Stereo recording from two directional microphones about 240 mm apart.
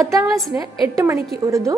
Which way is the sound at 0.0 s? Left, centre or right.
Centre.